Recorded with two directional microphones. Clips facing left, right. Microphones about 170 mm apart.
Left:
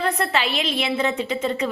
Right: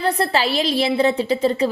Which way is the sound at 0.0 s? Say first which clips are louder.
Right 3 dB; 35° right (ahead or behind).